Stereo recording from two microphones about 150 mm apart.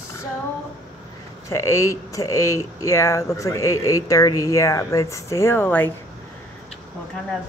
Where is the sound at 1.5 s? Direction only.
20° left (ahead or behind).